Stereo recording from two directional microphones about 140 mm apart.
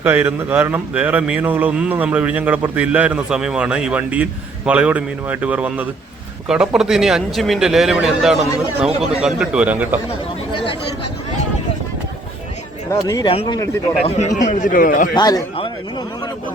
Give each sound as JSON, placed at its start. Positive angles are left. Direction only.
{"t": 0.0, "sound": "speech", "side_deg": -15}
{"t": 12.9, "sound": "speech", "side_deg": 25}
{"t": 13.2, "sound": "speech", "side_deg": 40}
{"t": 14.3, "sound": "a man's voice", "side_deg": 65}
{"t": 15.1, "sound": "speech", "side_deg": 30}